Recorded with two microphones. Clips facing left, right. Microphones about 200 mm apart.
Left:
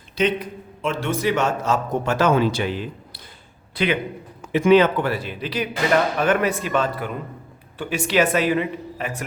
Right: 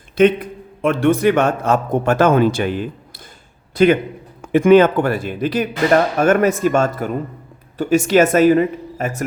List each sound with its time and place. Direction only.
0.2 s a man's voice: 50° right (ahead or behind)